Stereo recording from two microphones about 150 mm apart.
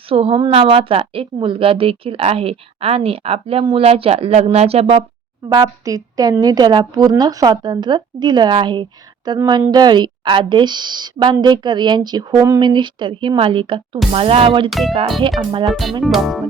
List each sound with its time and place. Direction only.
0.1 s speech: 40° right (ahead or behind)
5.5 s a woman's voice: 25° right (ahead or behind)
14.7 s music: centre (ahead or behind)